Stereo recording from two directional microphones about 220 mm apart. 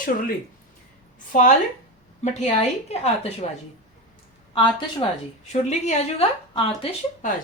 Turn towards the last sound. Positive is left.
turn(degrees=25)  # may be behind; listen again after turning